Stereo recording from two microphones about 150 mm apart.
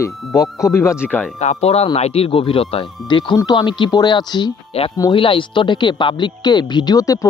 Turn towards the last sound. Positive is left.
turn(degrees=25)  # may be behind; listen again after turning